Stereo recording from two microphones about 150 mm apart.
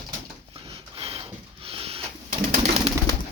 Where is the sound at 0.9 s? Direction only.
40° right (ahead or behind).